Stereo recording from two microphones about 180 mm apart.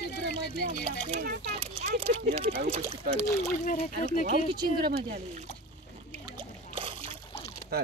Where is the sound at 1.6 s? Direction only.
35° right (ahead or behind).